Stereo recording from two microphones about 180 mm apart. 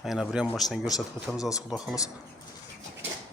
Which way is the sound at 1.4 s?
20° left (ahead or behind).